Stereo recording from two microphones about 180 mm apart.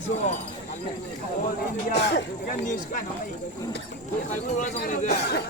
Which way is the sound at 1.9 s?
65° left (ahead or behind).